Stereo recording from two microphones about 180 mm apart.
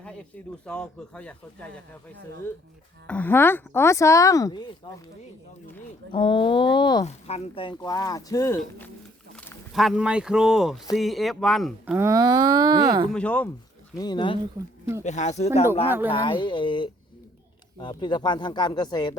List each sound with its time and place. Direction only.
0.6 s speech: 5° left (ahead or behind)
3.1 s speech: 10° left (ahead or behind)
6.1 s speech: 25° left (ahead or behind)
7.0 s speech: 35° left (ahead or behind); by 8.9 s 15° left (ahead or behind)
9.3 s a sound: 10° left (ahead or behind)
9.7 s speech: centre (ahead or behind)
11.9 s speech: 20° right (ahead or behind)
13.1 s speech: 5° left (ahead or behind)
13.9 s speech: 25° left (ahead or behind)
15.0 s speech: 40° left (ahead or behind)
16.0 s speech: 25° left (ahead or behind)